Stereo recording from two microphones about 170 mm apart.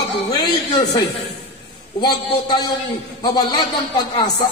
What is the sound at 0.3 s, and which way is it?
A man's voice, 25° left (ahead or behind).